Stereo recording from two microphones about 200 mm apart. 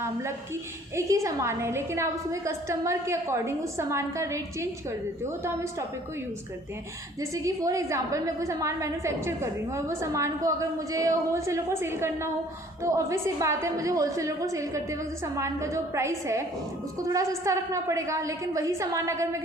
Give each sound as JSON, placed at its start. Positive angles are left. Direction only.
{"t": 0.0, "sound": "a woman's voice", "side_deg": -15}
{"t": 7.2, "sound": "a woman's voice", "side_deg": -15}